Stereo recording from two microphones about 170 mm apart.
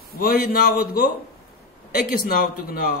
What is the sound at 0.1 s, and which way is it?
A man's voice, 60° left (ahead or behind).